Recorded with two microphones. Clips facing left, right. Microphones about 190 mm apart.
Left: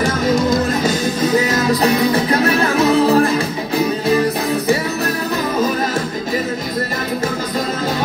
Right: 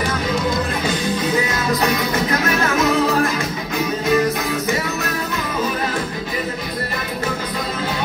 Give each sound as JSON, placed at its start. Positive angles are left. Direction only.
{"t": 1.8, "sound": "music", "side_deg": 35}